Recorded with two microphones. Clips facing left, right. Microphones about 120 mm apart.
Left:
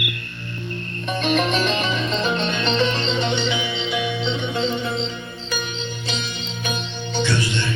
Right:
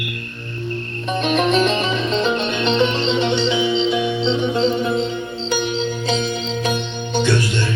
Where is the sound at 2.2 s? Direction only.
15° right (ahead or behind).